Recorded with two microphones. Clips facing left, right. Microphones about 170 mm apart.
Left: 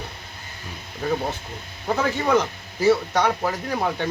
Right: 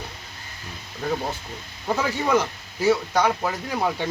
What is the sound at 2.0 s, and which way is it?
Speech, 5° right (ahead or behind).